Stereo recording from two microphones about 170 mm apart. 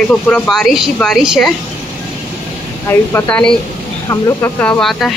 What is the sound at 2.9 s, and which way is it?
Speech, 15° left (ahead or behind).